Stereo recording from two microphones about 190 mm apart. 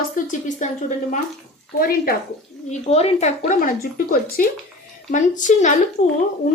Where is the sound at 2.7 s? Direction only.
35° left (ahead or behind).